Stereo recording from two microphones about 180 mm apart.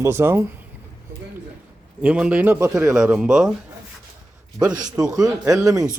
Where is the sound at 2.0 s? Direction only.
5° right (ahead or behind).